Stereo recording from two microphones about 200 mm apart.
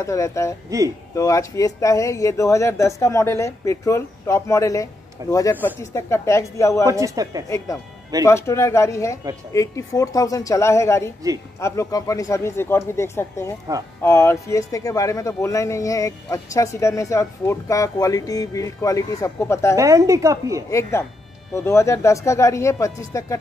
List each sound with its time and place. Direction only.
0.0 s speech: 15° left (ahead or behind)
0.7 s a woman's voice: 15° right (ahead or behind)
1.1 s speech: 15° left (ahead or behind)
6.9 s a woman's voice: 15° right (ahead or behind)
7.4 s speech: 15° left (ahead or behind)
19.8 s a woman's voice: 15° right (ahead or behind)
21.5 s speech: 15° left (ahead or behind)